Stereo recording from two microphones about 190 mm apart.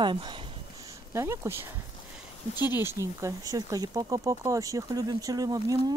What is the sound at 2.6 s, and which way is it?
Speech, 10° right (ahead or behind).